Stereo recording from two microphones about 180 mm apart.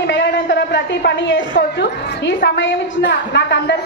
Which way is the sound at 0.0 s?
75° left (ahead or behind).